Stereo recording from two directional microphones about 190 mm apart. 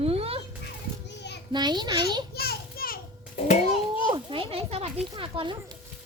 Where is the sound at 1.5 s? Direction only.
20° right (ahead or behind).